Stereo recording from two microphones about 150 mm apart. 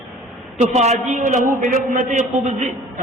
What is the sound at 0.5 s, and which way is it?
A man's voice, 45° right (ahead or behind).